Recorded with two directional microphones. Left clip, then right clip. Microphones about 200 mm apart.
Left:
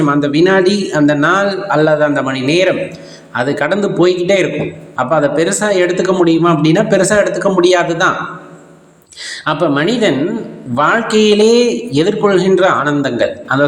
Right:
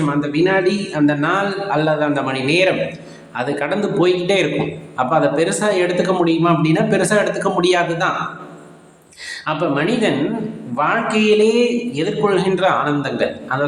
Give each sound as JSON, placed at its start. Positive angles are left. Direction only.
{"t": 0.0, "sound": "a man's voice", "side_deg": 30}
{"t": 9.3, "sound": "a man's voice", "side_deg": 30}